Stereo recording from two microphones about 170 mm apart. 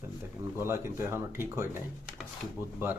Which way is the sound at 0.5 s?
15° right (ahead or behind).